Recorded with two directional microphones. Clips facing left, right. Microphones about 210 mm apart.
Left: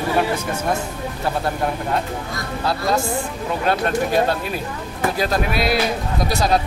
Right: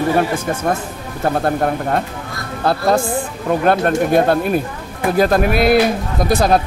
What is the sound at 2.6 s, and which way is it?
A man's voice, 55° right (ahead or behind).